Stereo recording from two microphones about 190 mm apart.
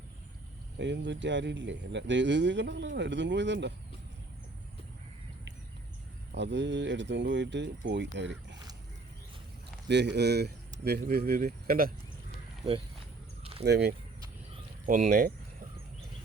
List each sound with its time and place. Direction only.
0.8 s speech: 70° right (ahead or behind)
6.3 s speech: 70° right (ahead or behind)
9.9 s speech: 65° right (ahead or behind)
12.6 s speech: 20° right (ahead or behind)
13.4 s a sound: 30° right (ahead or behind)
13.7 s speech: 60° right (ahead or behind)
14.8 s speech: 45° right (ahead or behind)